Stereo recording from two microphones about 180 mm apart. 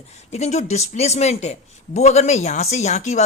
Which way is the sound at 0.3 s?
40° left (ahead or behind).